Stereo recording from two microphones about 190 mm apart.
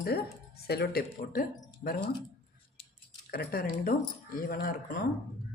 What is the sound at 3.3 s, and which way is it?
Speech, 50° left (ahead or behind).